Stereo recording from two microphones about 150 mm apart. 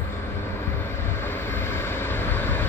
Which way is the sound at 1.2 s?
15° left (ahead or behind).